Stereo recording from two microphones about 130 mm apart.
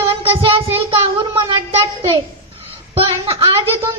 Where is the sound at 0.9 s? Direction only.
40° right (ahead or behind).